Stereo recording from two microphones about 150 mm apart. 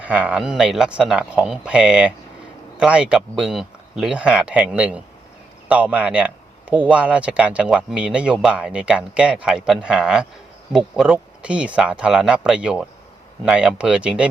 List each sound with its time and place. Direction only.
0.0 s a man's voice: 10° right (ahead or behind)